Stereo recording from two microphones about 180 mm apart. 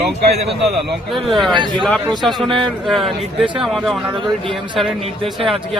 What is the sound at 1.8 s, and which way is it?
A man's voice, centre (ahead or behind).